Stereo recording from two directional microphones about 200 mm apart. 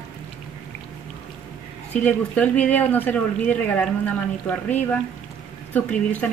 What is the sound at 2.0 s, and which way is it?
Speech, 5° left (ahead or behind).